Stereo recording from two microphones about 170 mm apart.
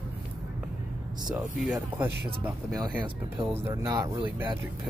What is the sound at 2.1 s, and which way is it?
Speech, 70° right (ahead or behind).